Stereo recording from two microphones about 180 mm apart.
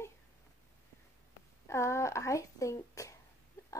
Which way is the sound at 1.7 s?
15° left (ahead or behind).